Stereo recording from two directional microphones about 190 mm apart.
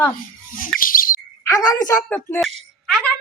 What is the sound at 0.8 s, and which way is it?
Bird, 50° left (ahead or behind).